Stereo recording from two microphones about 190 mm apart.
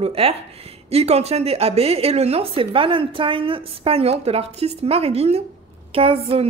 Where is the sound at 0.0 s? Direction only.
30° right (ahead or behind).